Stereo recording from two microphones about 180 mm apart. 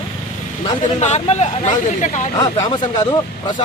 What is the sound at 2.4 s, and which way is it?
Speech, 20° left (ahead or behind).